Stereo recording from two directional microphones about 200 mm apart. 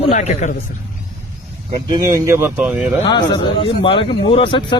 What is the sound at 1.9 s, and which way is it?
Speech, 15° right (ahead or behind).